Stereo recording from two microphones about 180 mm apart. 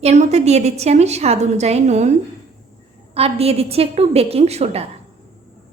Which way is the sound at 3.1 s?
35° right (ahead or behind).